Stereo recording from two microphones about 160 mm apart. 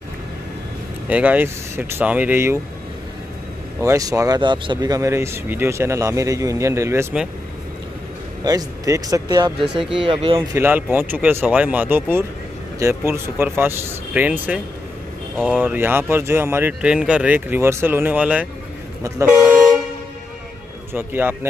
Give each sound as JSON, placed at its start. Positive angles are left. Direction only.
{"t": 1.0, "sound": "speech", "side_deg": -10}
{"t": 3.8, "sound": "speech", "side_deg": -20}
{"t": 8.5, "sound": "speech", "side_deg": -20}
{"t": 10.5, "sound": "speech", "side_deg": -15}
{"t": 15.6, "sound": "speech", "side_deg": -10}
{"t": 19.2, "sound": "vehicle", "side_deg": -5}
{"t": 20.9, "sound": "speech", "side_deg": -15}